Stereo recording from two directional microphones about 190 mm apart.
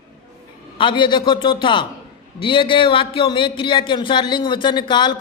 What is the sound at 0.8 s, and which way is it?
A man's voice, 25° left (ahead or behind).